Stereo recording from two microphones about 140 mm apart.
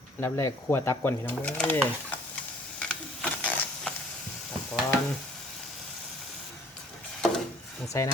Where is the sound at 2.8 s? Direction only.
10° left (ahead or behind).